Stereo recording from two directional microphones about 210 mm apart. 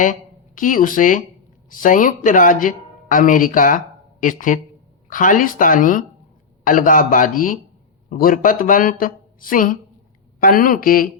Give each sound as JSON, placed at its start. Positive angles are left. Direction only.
{"t": 0.0, "sound": "speech", "side_deg": 40}